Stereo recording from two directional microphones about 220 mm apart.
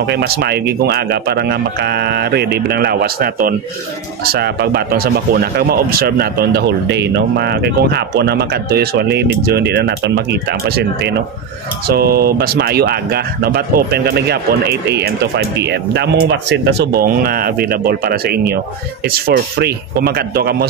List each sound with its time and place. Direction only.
0.0 s speech: 50° right (ahead or behind)